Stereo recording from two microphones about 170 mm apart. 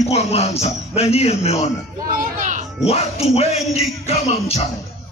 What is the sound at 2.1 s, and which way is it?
Speech, 50° right (ahead or behind).